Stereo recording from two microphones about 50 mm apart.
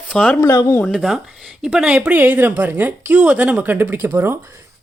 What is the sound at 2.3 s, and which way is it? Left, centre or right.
Speech, right.